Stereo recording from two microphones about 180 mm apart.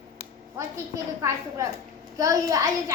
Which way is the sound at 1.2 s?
15° right (ahead or behind).